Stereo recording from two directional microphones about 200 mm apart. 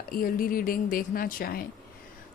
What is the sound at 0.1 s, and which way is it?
Speech, 45° left (ahead or behind).